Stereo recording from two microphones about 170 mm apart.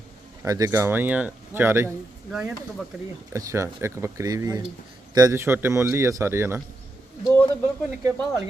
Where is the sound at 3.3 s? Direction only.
15° right (ahead or behind).